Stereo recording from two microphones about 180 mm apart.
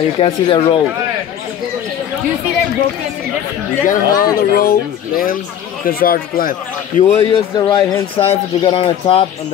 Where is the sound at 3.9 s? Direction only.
55° left (ahead or behind).